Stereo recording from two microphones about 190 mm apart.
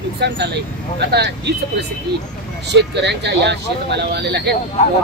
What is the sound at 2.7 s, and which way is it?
Speech, 65° right (ahead or behind).